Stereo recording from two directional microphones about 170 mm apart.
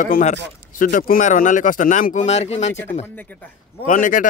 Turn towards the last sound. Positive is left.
turn(degrees=50)  # may be behind; listen again after turning